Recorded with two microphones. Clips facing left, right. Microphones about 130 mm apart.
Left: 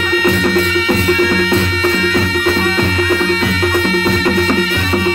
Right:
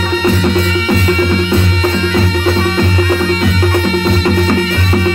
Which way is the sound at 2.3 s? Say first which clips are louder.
Right 1 dB; 35° right (ahead or behind).